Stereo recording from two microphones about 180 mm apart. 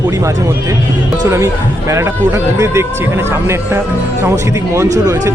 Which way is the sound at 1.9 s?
15° right (ahead or behind).